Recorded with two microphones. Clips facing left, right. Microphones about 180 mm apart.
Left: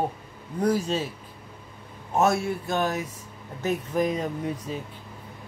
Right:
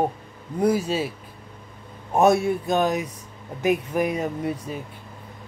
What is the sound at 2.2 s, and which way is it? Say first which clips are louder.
Speech: right 5 dB; 15° right (ahead or behind).